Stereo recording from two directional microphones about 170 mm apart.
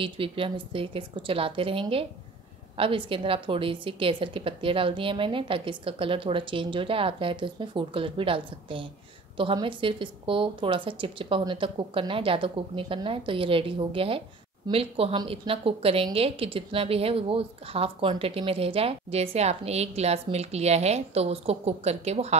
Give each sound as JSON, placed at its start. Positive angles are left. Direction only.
{"t": 0.0, "sound": "a woman's voice", "side_deg": -30}